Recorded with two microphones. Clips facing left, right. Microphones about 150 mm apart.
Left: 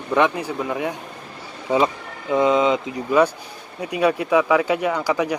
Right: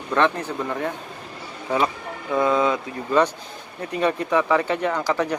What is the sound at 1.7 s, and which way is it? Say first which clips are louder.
Speech: left 3 dB; 20° left (ahead or behind).